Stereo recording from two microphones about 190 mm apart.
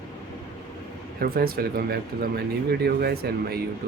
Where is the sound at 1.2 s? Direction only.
50° right (ahead or behind).